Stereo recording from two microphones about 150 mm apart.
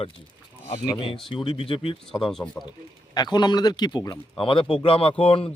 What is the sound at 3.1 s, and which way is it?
A man's voice, 30° left (ahead or behind).